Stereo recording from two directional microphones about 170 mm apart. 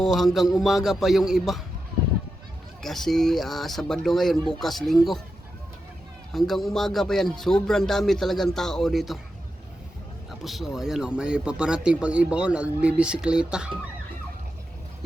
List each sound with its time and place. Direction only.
0.0 s speech: centre (ahead or behind)
2.8 s speech: centre (ahead or behind)
6.3 s speech: centre (ahead or behind)
10.4 s speech: centre (ahead or behind)